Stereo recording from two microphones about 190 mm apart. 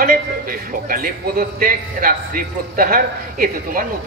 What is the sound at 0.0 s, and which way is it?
A woman's voice, 50° right (ahead or behind).